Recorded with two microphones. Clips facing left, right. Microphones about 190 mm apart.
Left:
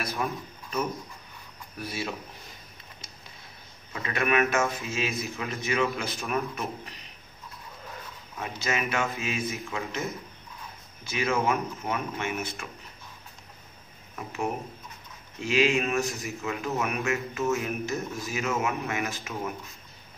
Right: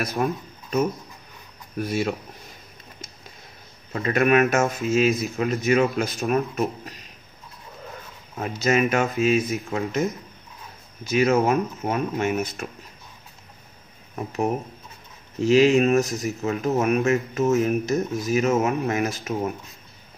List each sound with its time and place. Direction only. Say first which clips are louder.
0.0 s speech: right 6 dB; 45° right (ahead or behind)
3.9 s speech: right 7 dB; 40° right (ahead or behind)
8.4 s speech: right 9 dB; 40° right (ahead or behind)
11.1 s speech: right 7 dB; 40° right (ahead or behind)
14.1 s speech: right 6 dB; 35° right (ahead or behind)